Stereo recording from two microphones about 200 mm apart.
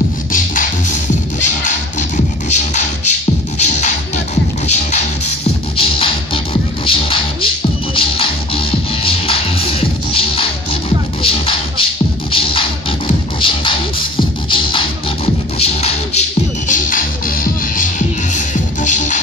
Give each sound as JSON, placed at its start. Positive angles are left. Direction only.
{"t": 0.3, "sound": "music", "side_deg": 40}